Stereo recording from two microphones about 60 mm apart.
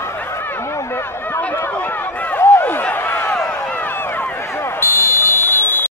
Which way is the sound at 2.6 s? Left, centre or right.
Left.